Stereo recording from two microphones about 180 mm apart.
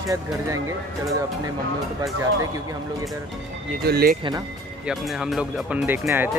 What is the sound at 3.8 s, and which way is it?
Speech, 60° right (ahead or behind).